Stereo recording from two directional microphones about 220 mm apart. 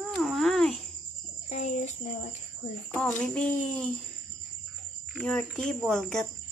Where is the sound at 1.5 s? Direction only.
30° left (ahead or behind).